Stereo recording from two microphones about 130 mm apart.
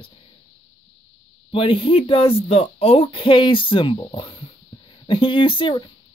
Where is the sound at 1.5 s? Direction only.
40° left (ahead or behind).